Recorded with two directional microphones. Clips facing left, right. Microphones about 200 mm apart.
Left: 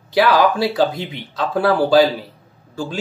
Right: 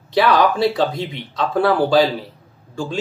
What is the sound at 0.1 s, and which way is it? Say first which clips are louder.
Speech: left 1 dB; 5° left (ahead or behind).